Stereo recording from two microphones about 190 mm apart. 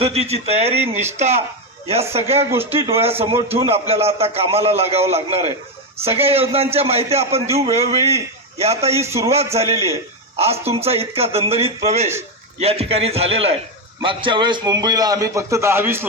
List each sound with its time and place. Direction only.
0.0 s speech: 35° right (ahead or behind)
9.0 s a man's voice: 15° right (ahead or behind)
9.3 s a man's voice: 35° right (ahead or behind); by 16.0 s 10° right (ahead or behind)